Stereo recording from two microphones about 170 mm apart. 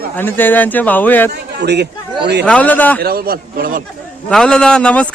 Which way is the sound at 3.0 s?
65° right (ahead or behind).